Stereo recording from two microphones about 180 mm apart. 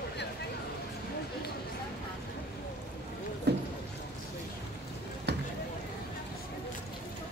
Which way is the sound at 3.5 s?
65° right (ahead or behind).